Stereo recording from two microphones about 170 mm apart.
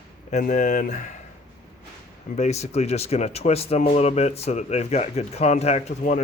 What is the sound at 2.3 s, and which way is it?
Speech, 40° left (ahead or behind).